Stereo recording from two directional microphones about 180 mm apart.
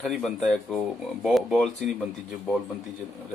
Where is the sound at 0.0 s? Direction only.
Centre (ahead or behind).